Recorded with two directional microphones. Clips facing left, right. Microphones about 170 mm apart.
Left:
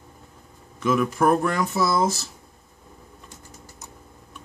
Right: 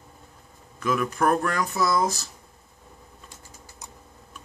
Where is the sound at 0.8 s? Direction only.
5° left (ahead or behind).